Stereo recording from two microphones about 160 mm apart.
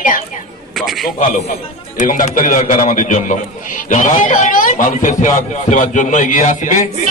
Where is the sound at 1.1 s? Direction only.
55° left (ahead or behind).